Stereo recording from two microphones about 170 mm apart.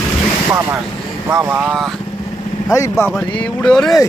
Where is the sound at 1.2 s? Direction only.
15° right (ahead or behind).